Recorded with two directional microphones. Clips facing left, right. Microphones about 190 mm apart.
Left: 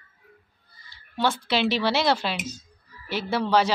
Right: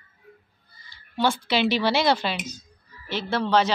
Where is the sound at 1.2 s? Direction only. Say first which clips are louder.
Right 1 dB; centre (ahead or behind).